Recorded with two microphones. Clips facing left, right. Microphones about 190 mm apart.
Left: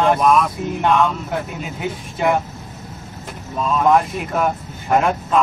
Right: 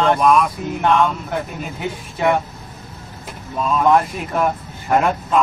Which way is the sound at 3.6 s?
Centre (ahead or behind).